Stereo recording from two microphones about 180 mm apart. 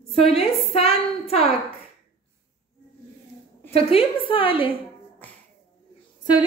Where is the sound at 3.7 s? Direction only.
30° left (ahead or behind).